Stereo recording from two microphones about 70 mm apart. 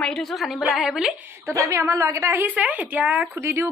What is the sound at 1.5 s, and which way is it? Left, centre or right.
A woman's voice, right.